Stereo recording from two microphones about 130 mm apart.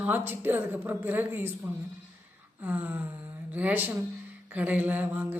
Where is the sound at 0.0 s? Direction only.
15° right (ahead or behind).